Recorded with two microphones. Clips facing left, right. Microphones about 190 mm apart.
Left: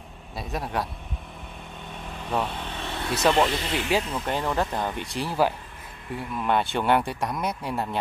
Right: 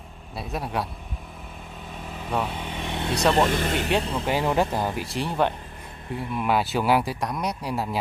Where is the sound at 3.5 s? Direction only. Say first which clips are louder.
Right 3 dB; 50° right (ahead or behind).